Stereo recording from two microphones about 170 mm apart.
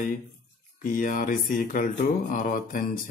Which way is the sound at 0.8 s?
50° left (ahead or behind).